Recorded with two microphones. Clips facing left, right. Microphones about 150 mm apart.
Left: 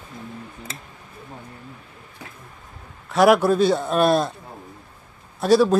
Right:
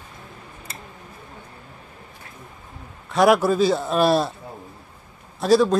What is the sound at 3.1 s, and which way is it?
Speech, centre (ahead or behind).